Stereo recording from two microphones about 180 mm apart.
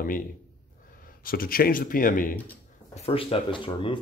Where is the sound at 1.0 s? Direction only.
55° left (ahead or behind).